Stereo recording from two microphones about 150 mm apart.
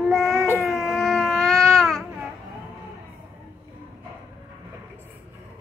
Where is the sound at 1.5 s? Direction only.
20° right (ahead or behind).